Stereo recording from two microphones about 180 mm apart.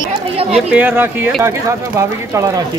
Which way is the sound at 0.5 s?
10° right (ahead or behind).